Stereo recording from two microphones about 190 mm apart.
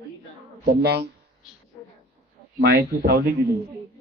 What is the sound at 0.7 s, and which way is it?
Speech, 60° right (ahead or behind).